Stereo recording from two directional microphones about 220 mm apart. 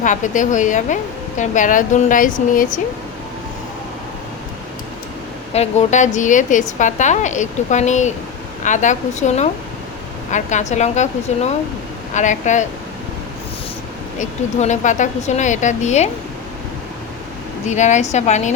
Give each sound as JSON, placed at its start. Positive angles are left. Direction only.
{"t": 0.0, "sound": "a woman's voice", "side_deg": 35}
{"t": 5.5, "sound": "a woman's voice", "side_deg": 30}
{"t": 14.2, "sound": "a woman's voice", "side_deg": 35}
{"t": 17.7, "sound": "a woman's voice", "side_deg": 30}